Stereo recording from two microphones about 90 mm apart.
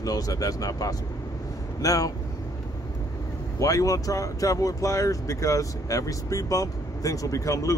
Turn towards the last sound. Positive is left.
turn(degrees=35)  # may be behind; listen again after turning